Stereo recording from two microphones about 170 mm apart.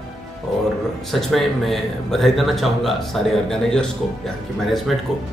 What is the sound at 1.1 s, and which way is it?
Speech, centre (ahead or behind).